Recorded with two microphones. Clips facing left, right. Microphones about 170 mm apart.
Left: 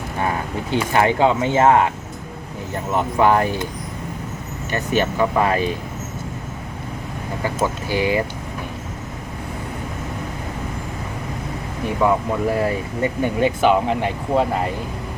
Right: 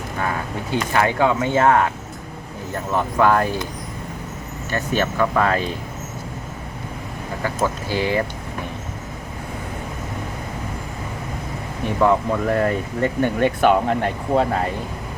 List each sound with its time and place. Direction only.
0.9 s speech: 20° left (ahead or behind)
2.9 s speech: 15° left (ahead or behind)
4.7 s speech: 15° left (ahead or behind)
7.4 s speech: 15° left (ahead or behind)
12.0 s speech: 5° left (ahead or behind)